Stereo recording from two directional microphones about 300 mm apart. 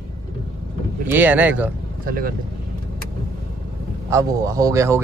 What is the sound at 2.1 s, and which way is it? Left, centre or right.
Speech, right.